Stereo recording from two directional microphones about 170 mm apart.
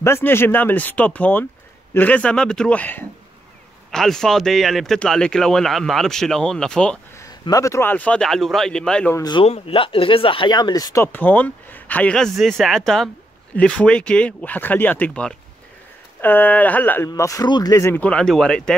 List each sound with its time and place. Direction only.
0.0 s speech: 15° left (ahead or behind)
7.2 s speech: 20° left (ahead or behind)
9.1 s speech: 25° left (ahead or behind); by 18.8 s 5° left (ahead or behind)